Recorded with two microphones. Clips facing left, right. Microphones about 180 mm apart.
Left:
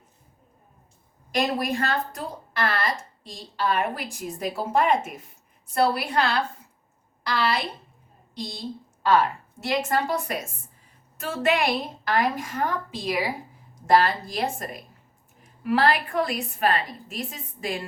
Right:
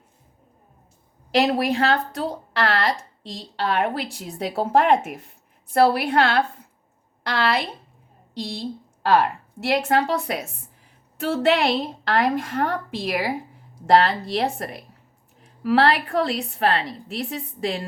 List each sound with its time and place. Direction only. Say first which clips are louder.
1.3 s a woman's voice: right 5 dB; 65° right (ahead or behind)
9.0 s a woman's voice: right 2 dB; 60° right (ahead or behind)